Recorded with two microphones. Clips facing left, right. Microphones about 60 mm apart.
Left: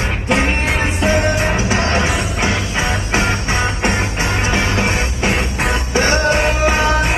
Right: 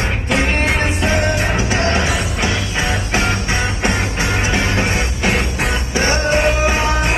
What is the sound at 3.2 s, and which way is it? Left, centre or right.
Music, left.